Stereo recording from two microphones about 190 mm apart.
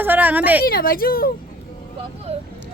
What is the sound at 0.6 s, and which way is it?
Speech, 50° left (ahead or behind).